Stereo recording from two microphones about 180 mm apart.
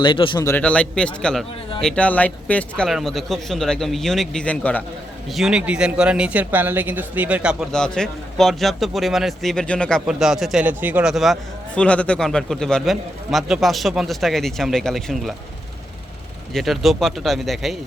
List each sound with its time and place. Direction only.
0.0 s a man's voice: 25° left (ahead or behind)
0.5 s speech: 5° left (ahead or behind)
5.3 s speech: 5° right (ahead or behind)
16.6 s speech: centre (ahead or behind)